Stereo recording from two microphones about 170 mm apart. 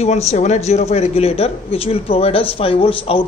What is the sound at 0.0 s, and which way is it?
Speech, 40° left (ahead or behind).